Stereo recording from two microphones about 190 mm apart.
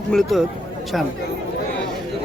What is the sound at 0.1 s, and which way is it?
Speech, centre (ahead or behind).